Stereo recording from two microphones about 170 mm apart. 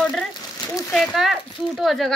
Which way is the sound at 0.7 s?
15° left (ahead or behind).